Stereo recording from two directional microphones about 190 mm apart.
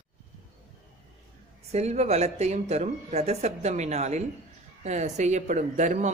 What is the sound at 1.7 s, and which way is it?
Speech, 35° right (ahead or behind).